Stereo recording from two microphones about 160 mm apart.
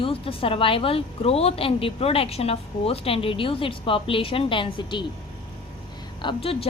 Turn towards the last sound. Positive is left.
turn(degrees=35)  # may be behind; listen again after turning